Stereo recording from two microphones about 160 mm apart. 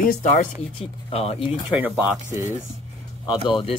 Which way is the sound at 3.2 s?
30° left (ahead or behind).